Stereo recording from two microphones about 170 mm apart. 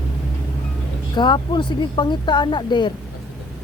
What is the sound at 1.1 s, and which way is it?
Speech, 30° left (ahead or behind).